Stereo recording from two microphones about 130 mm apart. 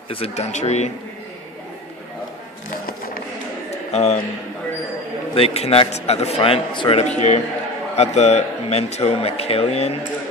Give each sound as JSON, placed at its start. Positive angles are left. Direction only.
{"t": 0.1, "sound": "speech", "side_deg": 55}
{"t": 3.9, "sound": "a man's voice", "side_deg": 55}
{"t": 5.3, "sound": "speech", "side_deg": 50}
{"t": 7.2, "sound": "speech", "side_deg": 60}